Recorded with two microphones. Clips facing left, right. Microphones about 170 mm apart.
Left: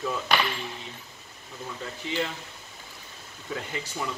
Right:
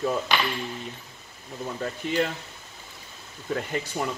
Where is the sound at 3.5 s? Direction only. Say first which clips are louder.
Right 5 dB; 50° right (ahead or behind).